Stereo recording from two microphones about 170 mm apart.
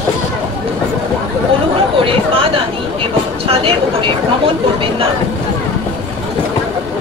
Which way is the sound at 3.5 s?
35° right (ahead or behind).